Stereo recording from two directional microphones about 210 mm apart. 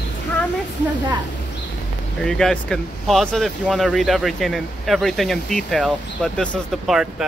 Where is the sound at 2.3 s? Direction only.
5° left (ahead or behind).